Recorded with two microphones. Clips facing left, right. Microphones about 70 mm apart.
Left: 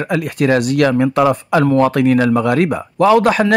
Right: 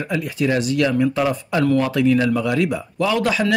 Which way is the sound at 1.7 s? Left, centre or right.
Left.